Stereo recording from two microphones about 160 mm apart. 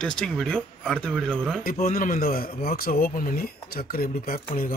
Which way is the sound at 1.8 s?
60° left (ahead or behind).